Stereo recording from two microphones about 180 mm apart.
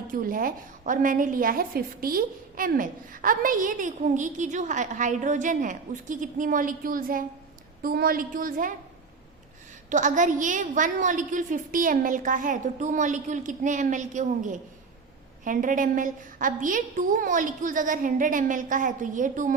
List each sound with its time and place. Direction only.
0.1 s a woman's voice: 50° right (ahead or behind)
9.9 s a woman's voice: 45° right (ahead or behind)